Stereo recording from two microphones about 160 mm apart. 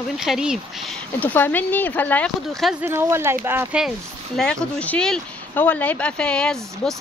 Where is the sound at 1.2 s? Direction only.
10° left (ahead or behind).